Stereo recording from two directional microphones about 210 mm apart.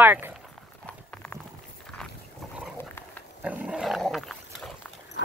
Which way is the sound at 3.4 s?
5° right (ahead or behind).